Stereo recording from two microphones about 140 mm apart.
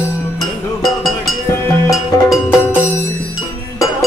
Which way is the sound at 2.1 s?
25° left (ahead or behind).